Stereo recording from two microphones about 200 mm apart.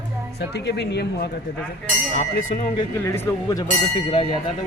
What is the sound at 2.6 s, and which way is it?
Speech, 30° left (ahead or behind).